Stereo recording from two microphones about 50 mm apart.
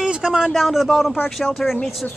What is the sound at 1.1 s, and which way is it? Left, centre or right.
Speech, centre.